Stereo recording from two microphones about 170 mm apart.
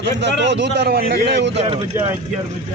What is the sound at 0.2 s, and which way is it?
A man's voice, 90° right.